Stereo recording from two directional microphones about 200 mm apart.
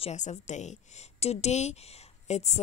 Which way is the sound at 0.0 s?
35° left (ahead or behind).